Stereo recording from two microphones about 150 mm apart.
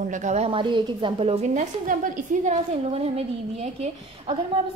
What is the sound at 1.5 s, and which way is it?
A woman's voice, 60° right (ahead or behind).